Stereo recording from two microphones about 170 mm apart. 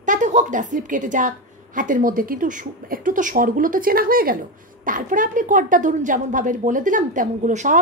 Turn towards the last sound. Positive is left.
turn(degrees=-45)  # may be behind; listen again after turning